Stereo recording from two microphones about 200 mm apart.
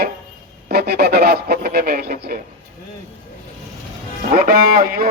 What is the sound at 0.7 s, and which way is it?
Speech, 55° right (ahead or behind).